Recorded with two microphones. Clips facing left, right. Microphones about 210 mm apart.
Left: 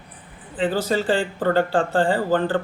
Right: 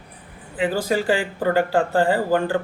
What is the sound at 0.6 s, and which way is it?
Speech, 10° right (ahead or behind).